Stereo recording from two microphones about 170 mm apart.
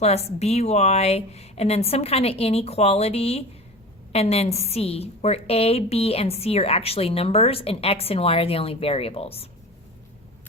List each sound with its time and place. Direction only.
0.0 s a woman's voice: 40° left (ahead or behind)